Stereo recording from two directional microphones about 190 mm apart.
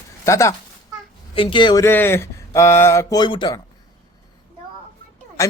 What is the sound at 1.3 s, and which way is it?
Speech, 25° left (ahead or behind).